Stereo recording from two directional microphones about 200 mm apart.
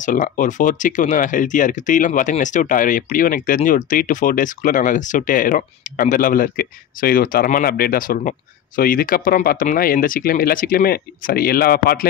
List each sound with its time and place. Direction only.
0.0 s speech: 40° left (ahead or behind)